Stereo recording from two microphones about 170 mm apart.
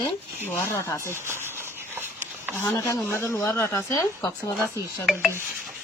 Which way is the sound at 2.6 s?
15° left (ahead or behind).